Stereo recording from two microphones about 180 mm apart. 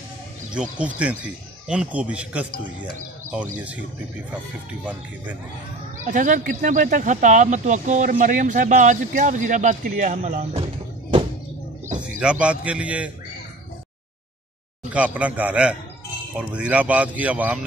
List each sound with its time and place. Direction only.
0.6 s speech: 5° right (ahead or behind)
3.5 s speech: 10° right (ahead or behind)
6.0 s speech: 45° right (ahead or behind)
12.2 s speech: 5° right (ahead or behind)
14.9 s speech: 5° right (ahead or behind)